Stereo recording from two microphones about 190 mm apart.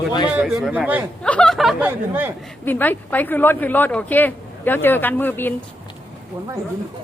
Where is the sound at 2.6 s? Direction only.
10° left (ahead or behind).